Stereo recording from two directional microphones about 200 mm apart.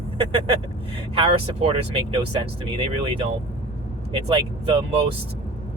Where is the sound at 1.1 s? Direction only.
30° right (ahead or behind).